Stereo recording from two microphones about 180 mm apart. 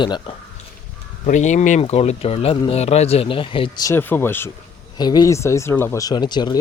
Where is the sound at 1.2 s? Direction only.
45° left (ahead or behind).